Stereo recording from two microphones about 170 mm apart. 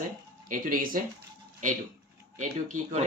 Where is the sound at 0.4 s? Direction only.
50° right (ahead or behind).